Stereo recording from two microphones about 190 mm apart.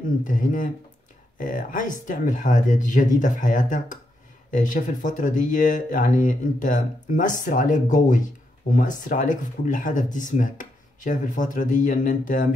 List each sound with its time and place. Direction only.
0.2 s speech: 45° left (ahead or behind)